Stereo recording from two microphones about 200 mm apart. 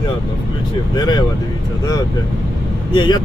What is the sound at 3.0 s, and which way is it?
Speech, 20° left (ahead or behind).